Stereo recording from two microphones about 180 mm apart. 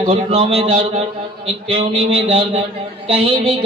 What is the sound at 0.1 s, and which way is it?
A man's voice, 35° right (ahead or behind).